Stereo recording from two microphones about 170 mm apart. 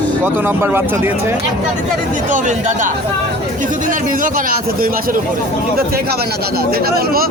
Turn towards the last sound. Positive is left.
turn(degrees=-65)  # may be behind; listen again after turning